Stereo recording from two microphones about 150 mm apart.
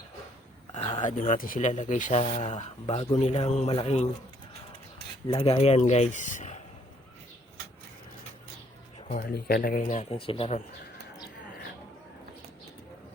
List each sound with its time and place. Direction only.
0.8 s a sound: 35° left (ahead or behind)
1.0 s speech: 55° left (ahead or behind)
5.3 s speech: 40° left (ahead or behind)
9.0 s speech: 70° left (ahead or behind)
10.0 s speech: 40° left (ahead or behind)